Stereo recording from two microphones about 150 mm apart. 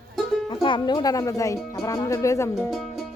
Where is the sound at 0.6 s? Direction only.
30° left (ahead or behind).